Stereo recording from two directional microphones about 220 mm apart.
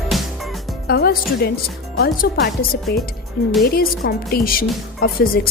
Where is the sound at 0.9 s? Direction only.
45° left (ahead or behind).